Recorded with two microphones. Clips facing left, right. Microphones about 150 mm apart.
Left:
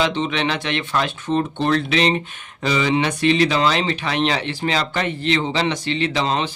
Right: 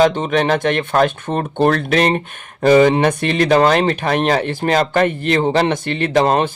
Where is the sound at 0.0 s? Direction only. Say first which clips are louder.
Right 6 dB; 50° right (ahead or behind).